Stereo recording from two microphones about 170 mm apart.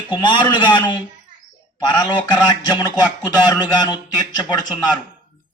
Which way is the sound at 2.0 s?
25° left (ahead or behind).